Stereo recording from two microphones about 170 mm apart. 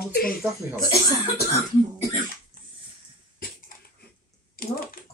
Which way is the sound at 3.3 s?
60° left (ahead or behind).